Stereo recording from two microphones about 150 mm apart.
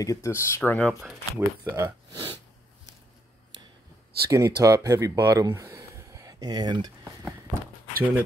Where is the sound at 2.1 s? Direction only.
30° right (ahead or behind).